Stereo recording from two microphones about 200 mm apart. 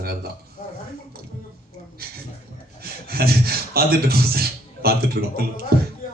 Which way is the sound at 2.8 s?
50° right (ahead or behind).